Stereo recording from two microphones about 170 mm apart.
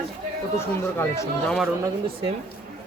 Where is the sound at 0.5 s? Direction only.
15° left (ahead or behind).